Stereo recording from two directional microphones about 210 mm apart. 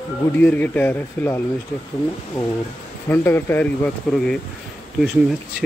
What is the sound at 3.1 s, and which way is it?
Speech, 10° left (ahead or behind).